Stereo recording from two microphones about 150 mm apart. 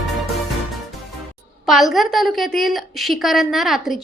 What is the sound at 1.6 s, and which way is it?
A woman's voice, centre (ahead or behind).